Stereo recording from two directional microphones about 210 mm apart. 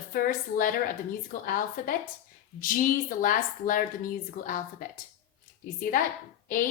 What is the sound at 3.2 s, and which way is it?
A woman's voice, 40° left (ahead or behind).